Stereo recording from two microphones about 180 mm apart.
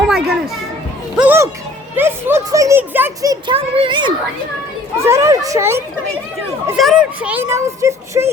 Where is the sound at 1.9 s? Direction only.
15° right (ahead or behind).